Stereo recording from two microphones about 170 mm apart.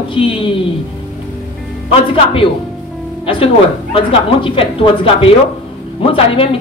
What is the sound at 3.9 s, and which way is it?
A woman's voice, 30° left (ahead or behind).